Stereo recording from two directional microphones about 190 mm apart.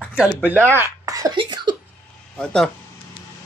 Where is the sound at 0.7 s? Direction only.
15° right (ahead or behind).